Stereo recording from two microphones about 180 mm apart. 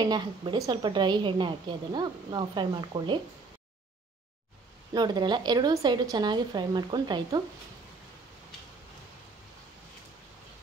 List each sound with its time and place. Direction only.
0.0 s a woman's voice: 25° right (ahead or behind)
4.9 s a woman's voice: 25° right (ahead or behind)